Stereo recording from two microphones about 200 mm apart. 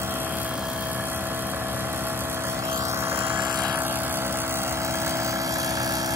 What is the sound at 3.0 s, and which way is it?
Vehicle, 10° right (ahead or behind).